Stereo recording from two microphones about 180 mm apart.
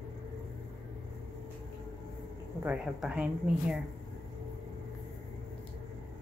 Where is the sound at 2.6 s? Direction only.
5° right (ahead or behind).